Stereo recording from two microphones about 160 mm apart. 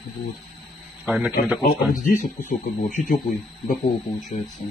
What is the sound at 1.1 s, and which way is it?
Speech, 10° right (ahead or behind).